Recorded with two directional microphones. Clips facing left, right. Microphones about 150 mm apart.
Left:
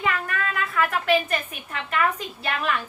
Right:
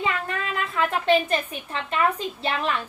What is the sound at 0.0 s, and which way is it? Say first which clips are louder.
A woman's voice: left 1 dB; 25° right (ahead or behind).